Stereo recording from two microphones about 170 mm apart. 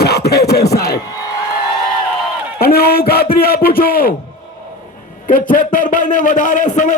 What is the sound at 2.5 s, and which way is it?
A man's voice, 65° left (ahead or behind).